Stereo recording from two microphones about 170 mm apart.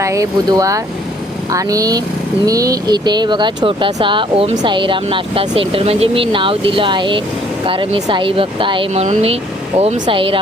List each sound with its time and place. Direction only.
0.0 s speech: 20° right (ahead or behind)
8.9 s speech: 40° right (ahead or behind)